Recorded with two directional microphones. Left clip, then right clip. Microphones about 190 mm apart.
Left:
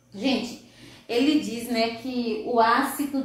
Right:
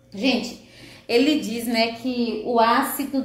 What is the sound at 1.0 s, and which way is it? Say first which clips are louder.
Speech: right 3 dB; 50° right (ahead or behind).